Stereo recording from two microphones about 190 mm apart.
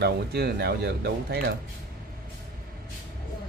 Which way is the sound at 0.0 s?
60° right (ahead or behind).